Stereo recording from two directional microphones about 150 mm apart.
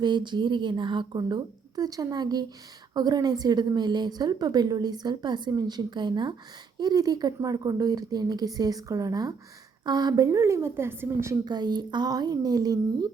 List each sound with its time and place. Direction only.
0.0 s a woman's voice: 30° right (ahead or behind)